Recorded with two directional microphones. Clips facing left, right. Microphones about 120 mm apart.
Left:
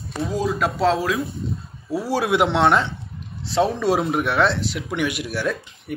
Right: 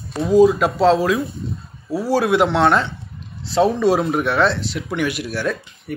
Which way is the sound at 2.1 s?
20° left (ahead or behind).